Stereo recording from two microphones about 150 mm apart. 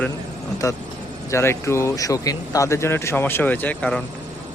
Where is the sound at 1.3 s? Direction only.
20° left (ahead or behind).